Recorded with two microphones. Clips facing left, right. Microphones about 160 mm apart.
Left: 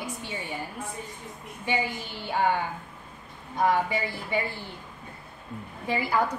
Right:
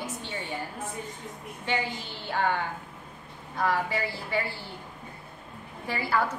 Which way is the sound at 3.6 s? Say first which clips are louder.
Left 3 dB; 15° left (ahead or behind).